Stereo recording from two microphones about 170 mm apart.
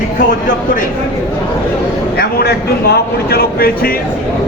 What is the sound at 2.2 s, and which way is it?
Speech, 65° left (ahead or behind).